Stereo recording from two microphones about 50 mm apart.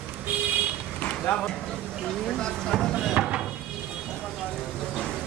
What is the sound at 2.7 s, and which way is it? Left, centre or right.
Speech, centre.